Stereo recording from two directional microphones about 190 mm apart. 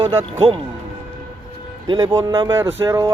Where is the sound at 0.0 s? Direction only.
25° right (ahead or behind).